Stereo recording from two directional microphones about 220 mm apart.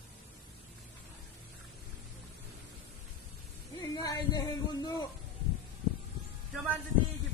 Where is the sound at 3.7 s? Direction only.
15° left (ahead or behind).